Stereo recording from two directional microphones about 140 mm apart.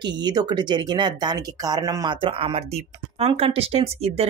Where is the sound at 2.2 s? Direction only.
45° right (ahead or behind).